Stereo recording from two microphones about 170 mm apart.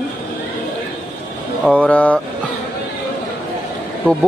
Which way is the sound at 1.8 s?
10° left (ahead or behind).